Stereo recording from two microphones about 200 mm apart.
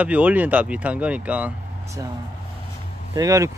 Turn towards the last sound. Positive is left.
turn(degrees=-15)  # may be behind; listen again after turning